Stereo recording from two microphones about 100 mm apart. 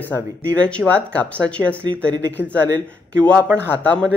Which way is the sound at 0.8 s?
10° right (ahead or behind).